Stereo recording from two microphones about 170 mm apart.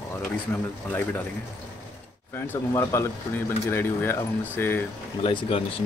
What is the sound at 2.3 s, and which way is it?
Speech, 15° left (ahead or behind).